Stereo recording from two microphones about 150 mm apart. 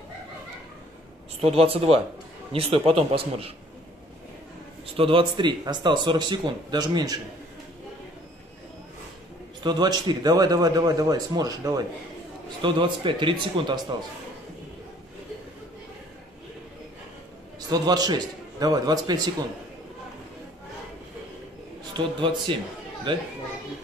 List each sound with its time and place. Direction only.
1.4 s speech: 40° right (ahead or behind)
4.9 s speech: 35° right (ahead or behind)
9.6 s speech: 30° right (ahead or behind)
17.6 s a man's voice: 25° right (ahead or behind)
21.9 s speech: 35° right (ahead or behind)